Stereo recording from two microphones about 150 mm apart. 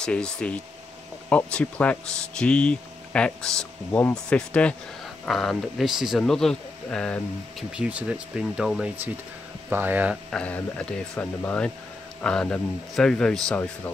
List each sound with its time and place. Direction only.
0.0 s speech: 5° left (ahead or behind)
7.7 s speech: 5° right (ahead or behind)
10.3 s speech: 5° left (ahead or behind)